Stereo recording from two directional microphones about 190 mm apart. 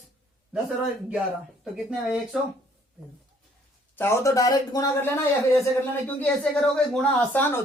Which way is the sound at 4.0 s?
15° left (ahead or behind).